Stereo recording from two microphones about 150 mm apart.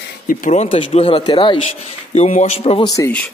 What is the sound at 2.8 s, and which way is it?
Speech, 25° left (ahead or behind).